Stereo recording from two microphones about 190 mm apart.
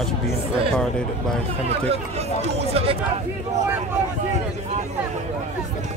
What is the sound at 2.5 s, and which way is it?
Speech, 30° right (ahead or behind).